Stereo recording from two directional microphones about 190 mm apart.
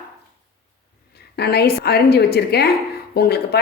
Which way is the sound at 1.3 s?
55° left (ahead or behind).